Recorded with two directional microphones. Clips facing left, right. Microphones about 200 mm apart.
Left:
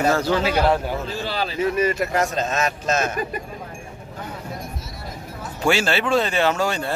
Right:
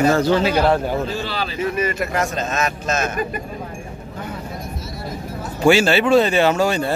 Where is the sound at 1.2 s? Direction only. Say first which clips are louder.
Even; 40° left (ahead or behind).